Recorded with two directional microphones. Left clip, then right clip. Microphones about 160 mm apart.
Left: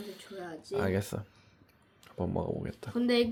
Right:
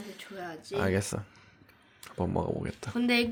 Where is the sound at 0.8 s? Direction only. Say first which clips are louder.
Right 3 dB; 10° right (ahead or behind).